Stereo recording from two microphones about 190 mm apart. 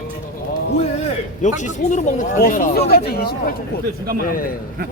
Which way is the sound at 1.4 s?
40° left (ahead or behind).